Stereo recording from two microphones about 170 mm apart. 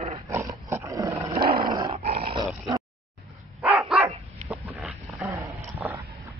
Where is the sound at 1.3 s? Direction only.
30° right (ahead or behind).